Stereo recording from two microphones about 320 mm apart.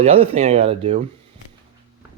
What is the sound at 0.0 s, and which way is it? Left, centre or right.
Speech, centre.